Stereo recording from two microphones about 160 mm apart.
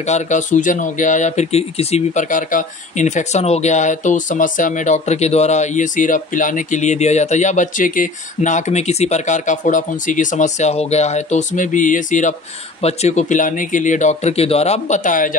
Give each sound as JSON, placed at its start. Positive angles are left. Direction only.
{"t": 0.0, "sound": "speech", "side_deg": 45}